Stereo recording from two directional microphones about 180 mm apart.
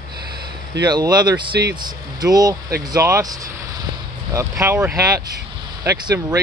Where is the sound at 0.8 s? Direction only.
20° right (ahead or behind).